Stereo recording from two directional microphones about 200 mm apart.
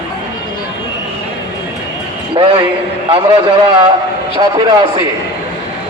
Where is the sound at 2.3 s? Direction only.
25° right (ahead or behind).